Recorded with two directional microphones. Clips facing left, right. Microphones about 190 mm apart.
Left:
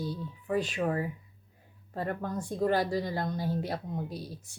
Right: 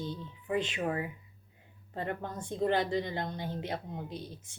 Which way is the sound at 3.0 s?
40° left (ahead or behind).